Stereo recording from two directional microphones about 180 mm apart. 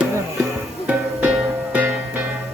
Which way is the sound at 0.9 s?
10° right (ahead or behind).